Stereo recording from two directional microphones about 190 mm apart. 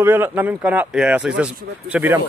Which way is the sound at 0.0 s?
10° right (ahead or behind).